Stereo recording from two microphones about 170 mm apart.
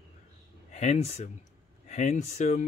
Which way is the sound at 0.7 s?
40° left (ahead or behind).